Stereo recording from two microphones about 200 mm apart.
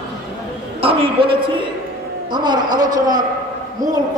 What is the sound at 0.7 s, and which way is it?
Speech, 25° right (ahead or behind).